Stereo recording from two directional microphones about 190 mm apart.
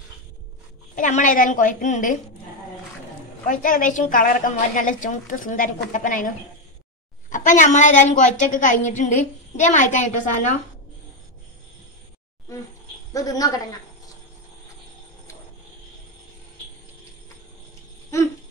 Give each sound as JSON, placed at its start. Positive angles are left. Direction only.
{"t": 0.9, "sound": "a woman's voice", "side_deg": 45}
{"t": 3.4, "sound": "a woman's voice", "side_deg": 45}
{"t": 13.1, "sound": "a woman's voice", "side_deg": 20}